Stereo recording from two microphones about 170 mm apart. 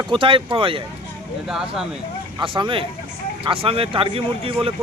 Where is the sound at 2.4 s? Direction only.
30° right (ahead or behind).